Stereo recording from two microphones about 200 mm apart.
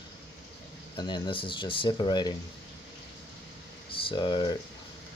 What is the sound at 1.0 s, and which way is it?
Speech, 25° left (ahead or behind).